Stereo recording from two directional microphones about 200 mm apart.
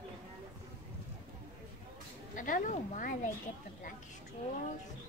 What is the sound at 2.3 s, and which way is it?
Speech, 40° left (ahead or behind).